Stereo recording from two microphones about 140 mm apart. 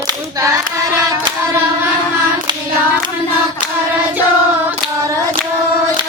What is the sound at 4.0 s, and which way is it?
Hands, 15° right (ahead or behind).